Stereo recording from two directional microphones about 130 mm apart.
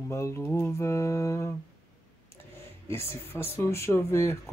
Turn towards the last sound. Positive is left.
turn(degrees=20)  # may be behind; listen again after turning